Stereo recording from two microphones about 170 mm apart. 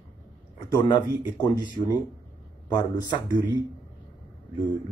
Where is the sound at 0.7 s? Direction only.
25° left (ahead or behind).